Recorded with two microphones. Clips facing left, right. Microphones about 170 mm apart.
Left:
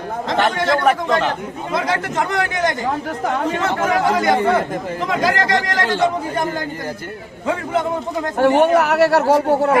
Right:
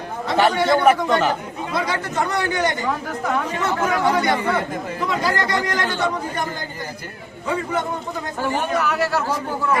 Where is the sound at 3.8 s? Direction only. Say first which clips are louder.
Left 2 dB; 45° left (ahead or behind).